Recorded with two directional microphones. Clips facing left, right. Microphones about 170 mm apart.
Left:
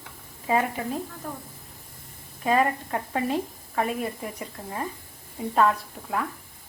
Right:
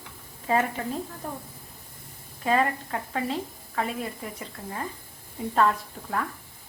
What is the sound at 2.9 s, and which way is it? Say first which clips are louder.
A woman's voice: left 3 dB; 20° left (ahead or behind).